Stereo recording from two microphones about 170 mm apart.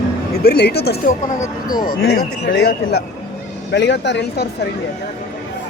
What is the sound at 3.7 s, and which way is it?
Speech, 90° left.